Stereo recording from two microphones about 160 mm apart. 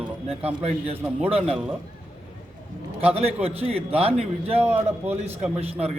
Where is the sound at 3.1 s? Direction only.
40° right (ahead or behind).